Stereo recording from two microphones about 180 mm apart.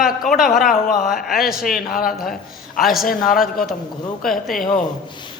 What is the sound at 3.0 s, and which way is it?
Speech, 50° left (ahead or behind).